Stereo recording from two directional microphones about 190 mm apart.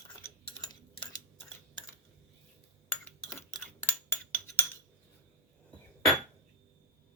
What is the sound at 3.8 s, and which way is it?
Cutlery, 10° left (ahead or behind).